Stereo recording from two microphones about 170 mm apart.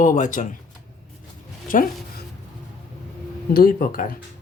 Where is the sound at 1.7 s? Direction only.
50° left (ahead or behind).